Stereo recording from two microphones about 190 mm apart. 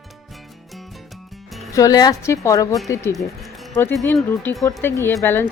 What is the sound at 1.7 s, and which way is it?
Speech, 20° left (ahead or behind).